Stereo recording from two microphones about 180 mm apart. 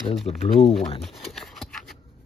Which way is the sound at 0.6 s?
Centre (ahead or behind).